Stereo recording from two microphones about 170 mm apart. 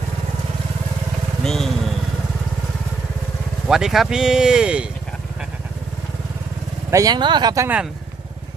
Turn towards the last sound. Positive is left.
turn(degrees=-25)  # may be behind; listen again after turning